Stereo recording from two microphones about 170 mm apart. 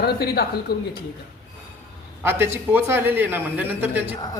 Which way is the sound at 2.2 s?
15° right (ahead or behind).